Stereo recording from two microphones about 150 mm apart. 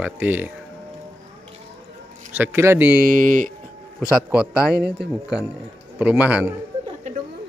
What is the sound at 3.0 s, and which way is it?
Speech, 60° right (ahead or behind).